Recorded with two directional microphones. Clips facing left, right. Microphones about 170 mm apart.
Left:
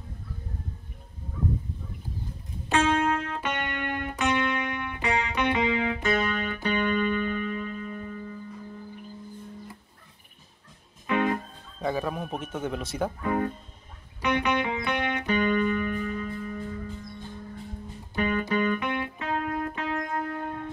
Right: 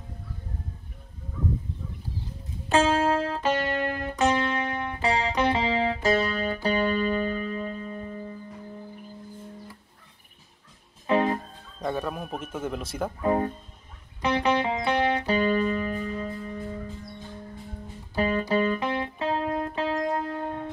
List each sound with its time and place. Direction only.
2.7 s music: 30° right (ahead or behind)
11.1 s music: 35° right (ahead or behind)
11.8 s music: centre (ahead or behind)
12.5 s speech: 5° right (ahead or behind)
13.2 s speech: 30° right (ahead or behind)
14.2 s music: 30° right (ahead or behind)
18.1 s music: 30° right (ahead or behind)